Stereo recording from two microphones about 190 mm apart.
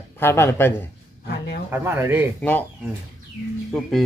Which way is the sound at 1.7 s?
10° right (ahead or behind).